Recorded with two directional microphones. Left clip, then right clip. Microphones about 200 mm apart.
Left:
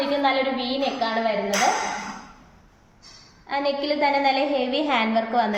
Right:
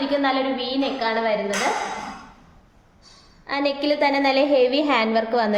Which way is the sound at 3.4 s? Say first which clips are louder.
Right 2 dB; 50° right (ahead or behind).